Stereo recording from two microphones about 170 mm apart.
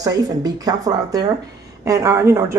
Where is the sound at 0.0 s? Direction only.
20° right (ahead or behind).